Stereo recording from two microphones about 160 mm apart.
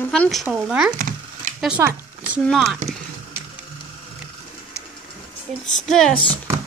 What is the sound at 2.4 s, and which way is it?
Speech, centre (ahead or behind).